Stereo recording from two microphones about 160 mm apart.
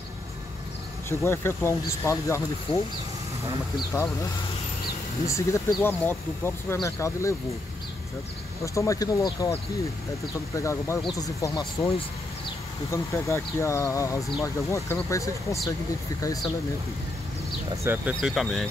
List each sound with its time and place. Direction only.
1.0 s speech: 15° left (ahead or behind)
5.2 s speech: 20° left (ahead or behind)
8.7 s speech: 20° left (ahead or behind)
10.5 s speech: 20° left (ahead or behind)
12.9 s speech: 20° left (ahead or behind)
17.8 s speech: 10° right (ahead or behind)